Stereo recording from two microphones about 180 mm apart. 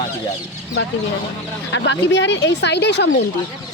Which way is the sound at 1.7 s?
85° left.